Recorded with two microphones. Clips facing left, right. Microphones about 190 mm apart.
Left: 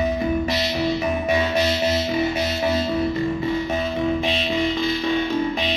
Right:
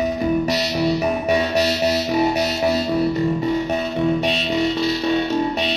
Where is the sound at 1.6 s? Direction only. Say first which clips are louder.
Right 2 dB; 70° right (ahead or behind).